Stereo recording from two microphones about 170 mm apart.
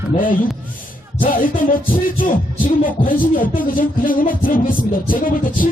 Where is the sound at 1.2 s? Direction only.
55° left (ahead or behind).